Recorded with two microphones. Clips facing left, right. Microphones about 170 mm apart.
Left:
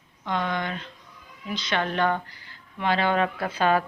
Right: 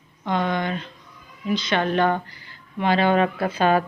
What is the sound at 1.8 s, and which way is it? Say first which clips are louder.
Speech: right 3 dB; 30° right (ahead or behind).